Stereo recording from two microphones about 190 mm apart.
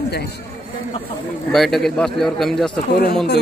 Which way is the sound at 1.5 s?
Centre (ahead or behind).